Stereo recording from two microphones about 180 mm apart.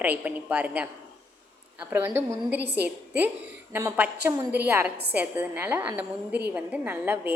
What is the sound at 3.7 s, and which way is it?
A woman's voice, 10° right (ahead or behind).